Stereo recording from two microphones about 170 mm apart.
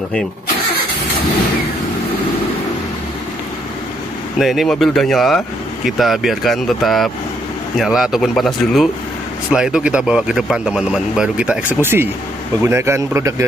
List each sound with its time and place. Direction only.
4.4 s a man's voice: centre (ahead or behind); by 13.5 s 15° right (ahead or behind)